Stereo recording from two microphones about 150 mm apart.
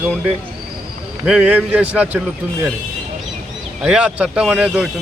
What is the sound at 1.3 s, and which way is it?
Speech, 5° right (ahead or behind).